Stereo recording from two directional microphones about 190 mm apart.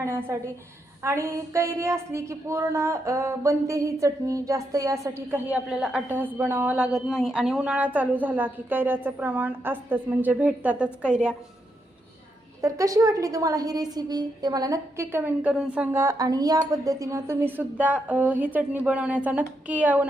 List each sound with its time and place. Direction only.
0.0 s a woman's voice: 15° right (ahead or behind)
12.6 s a woman's voice: 15° right (ahead or behind)